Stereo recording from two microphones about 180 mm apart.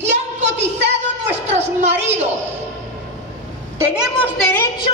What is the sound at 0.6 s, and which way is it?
A woman's voice, 35° right (ahead or behind).